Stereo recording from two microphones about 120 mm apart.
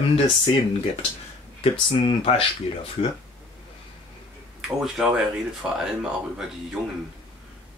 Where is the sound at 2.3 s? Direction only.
50° left (ahead or behind).